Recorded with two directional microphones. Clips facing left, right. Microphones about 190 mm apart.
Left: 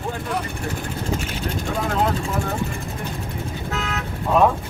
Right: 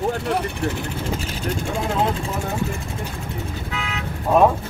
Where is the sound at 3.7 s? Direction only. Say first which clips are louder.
Left 2 dB; 45° left (ahead or behind).